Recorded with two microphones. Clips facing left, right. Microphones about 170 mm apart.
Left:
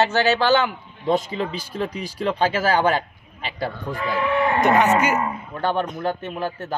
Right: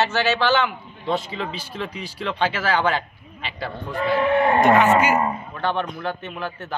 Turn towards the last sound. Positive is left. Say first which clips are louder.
# left 3 dB
turn(degrees=40)  # may be behind; listen again after turning